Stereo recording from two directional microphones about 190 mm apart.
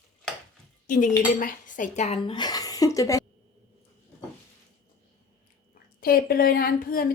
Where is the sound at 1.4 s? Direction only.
45° left (ahead or behind); by 3.2 s 15° left (ahead or behind).